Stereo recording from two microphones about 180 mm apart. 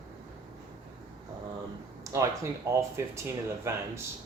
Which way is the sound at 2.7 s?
15° right (ahead or behind).